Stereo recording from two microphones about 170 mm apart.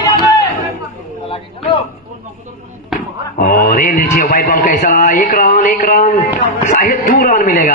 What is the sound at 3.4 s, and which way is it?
A man's voice, 55° left (ahead or behind).